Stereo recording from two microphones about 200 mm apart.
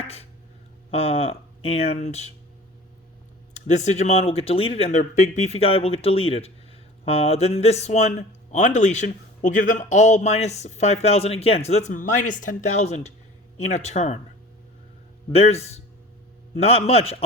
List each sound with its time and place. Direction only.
0.0 s a sound: 30° left (ahead or behind)
0.9 s speech: 30° left (ahead or behind)
3.5 s speech: 35° left (ahead or behind)
15.3 s speech: 30° left (ahead or behind)